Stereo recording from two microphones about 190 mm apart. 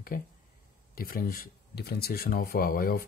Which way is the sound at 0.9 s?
50° left (ahead or behind).